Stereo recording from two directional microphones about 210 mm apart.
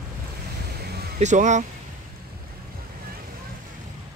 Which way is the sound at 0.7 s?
50° right (ahead or behind).